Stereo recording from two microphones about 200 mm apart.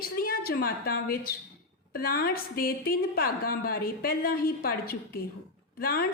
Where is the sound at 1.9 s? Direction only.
50° left (ahead or behind).